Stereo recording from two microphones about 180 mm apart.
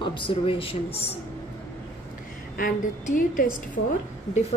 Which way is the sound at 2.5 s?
50° left (ahead or behind).